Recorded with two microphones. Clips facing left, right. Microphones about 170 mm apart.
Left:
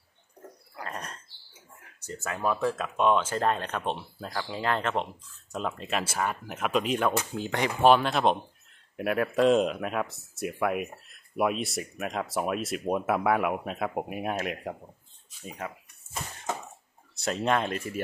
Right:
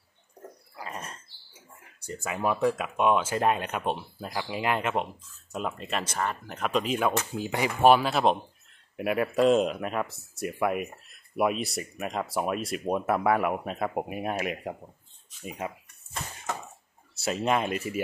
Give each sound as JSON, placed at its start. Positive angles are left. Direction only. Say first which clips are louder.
{"t": 0.7, "sound": "a sound", "louder": "left 1 dB", "side_deg": -5}
{"t": 2.0, "sound": "speech", "louder": "right 2 dB", "side_deg": -15}
{"t": 15.4, "sound": "speech", "louder": "right 3 dB", "side_deg": -20}
{"t": 17.2, "sound": "speech", "louder": "even", "side_deg": -5}